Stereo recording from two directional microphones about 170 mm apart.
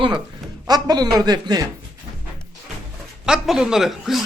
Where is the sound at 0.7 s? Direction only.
25° right (ahead or behind).